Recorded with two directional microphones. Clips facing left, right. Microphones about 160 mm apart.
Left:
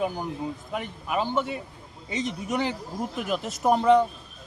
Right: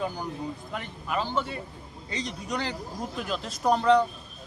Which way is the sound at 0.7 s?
10° left (ahead or behind).